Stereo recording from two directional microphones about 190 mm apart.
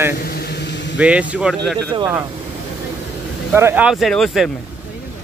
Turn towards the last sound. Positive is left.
turn(degrees=0)  # may be behind; listen again after turning